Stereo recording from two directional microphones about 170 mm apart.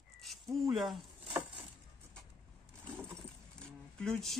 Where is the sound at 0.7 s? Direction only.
Centre (ahead or behind).